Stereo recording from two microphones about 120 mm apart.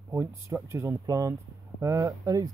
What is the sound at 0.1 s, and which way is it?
Speech, 20° right (ahead or behind).